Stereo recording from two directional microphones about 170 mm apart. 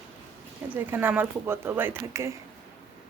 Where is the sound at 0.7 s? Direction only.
10° right (ahead or behind).